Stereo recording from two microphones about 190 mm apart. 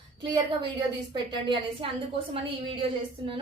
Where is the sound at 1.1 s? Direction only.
25° right (ahead or behind).